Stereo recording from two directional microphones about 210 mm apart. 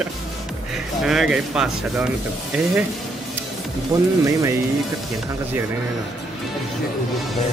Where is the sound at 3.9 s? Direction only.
15° right (ahead or behind).